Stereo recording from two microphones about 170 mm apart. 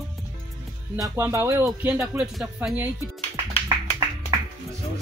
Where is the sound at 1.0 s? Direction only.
15° right (ahead or behind).